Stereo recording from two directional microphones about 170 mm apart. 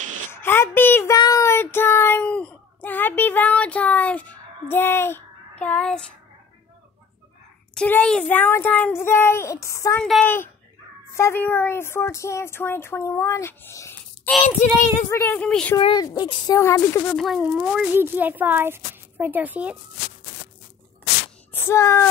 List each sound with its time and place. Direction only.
0.3 s speech: 15° left (ahead or behind)
7.7 s speech: 5° left (ahead or behind)
15.8 s speech: 25° left (ahead or behind)
17.1 s speech: centre (ahead or behind)
21.5 s speech: 15° left (ahead or behind)